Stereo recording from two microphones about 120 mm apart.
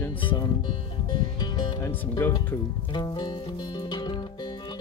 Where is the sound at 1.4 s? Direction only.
35° left (ahead or behind).